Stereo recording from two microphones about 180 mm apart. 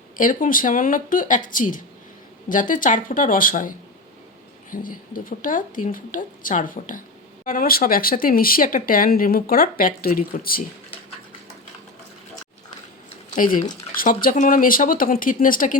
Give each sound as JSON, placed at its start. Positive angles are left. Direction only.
{"t": 0.2, "sound": "speech", "side_deg": 50}
{"t": 13.3, "sound": "speech", "side_deg": 45}